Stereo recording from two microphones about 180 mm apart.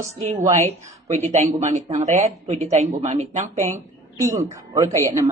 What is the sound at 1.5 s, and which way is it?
Speech, 40° right (ahead or behind).